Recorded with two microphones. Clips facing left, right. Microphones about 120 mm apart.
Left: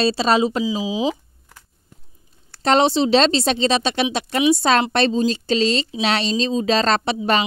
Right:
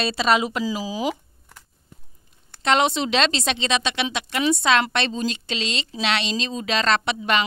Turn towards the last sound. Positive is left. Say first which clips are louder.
# left 4 dB
turn(degrees=35)  # may be behind; listen again after turning